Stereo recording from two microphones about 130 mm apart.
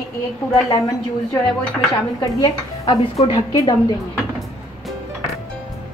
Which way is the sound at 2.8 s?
55° left (ahead or behind).